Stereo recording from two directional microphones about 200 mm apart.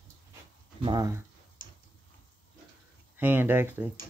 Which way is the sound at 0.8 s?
20° right (ahead or behind).